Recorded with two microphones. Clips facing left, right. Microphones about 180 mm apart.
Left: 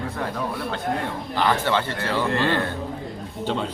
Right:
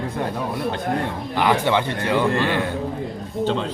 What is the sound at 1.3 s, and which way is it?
Speech, 15° right (ahead or behind).